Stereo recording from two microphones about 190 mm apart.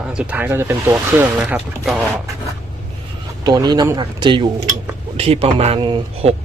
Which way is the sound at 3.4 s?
20° right (ahead or behind).